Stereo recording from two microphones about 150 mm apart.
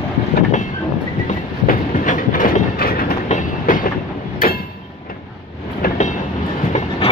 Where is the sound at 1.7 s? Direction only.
65° left (ahead or behind); by 3.1 s 80° left.